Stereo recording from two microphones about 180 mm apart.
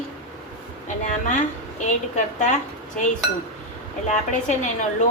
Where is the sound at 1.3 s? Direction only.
45° left (ahead or behind).